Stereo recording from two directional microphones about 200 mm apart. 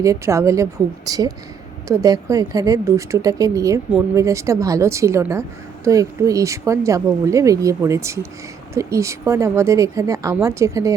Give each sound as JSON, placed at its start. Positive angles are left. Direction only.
{"t": 0.0, "sound": "a woman's voice", "side_deg": -15}